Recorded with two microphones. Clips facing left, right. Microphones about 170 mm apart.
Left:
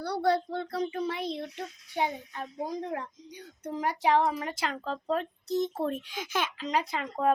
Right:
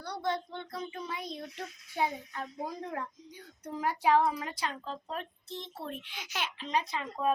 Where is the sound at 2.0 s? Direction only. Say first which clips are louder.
Left 2 dB; 20° left (ahead or behind).